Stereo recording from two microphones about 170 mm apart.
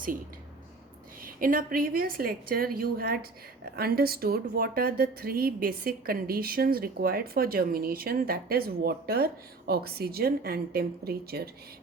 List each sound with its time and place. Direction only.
1.2 s a woman's voice: 55° right (ahead or behind)